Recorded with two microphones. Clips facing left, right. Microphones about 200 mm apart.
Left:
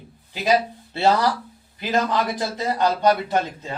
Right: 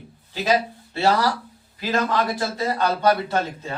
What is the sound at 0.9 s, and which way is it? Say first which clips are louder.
A man's voice: left 1 dB; 20° left (ahead or behind).